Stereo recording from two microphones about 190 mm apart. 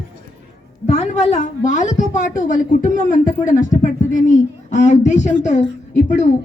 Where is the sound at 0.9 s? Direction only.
35° left (ahead or behind).